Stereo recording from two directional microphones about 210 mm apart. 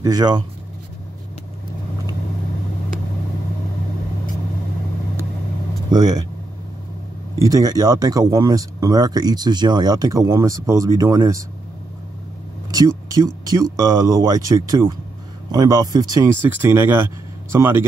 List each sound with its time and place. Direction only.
0.0 s speech: 20° right (ahead or behind)
5.9 s speech: 20° right (ahead or behind)
7.3 s speech: 15° right (ahead or behind)
12.7 s speech: 15° right (ahead or behind)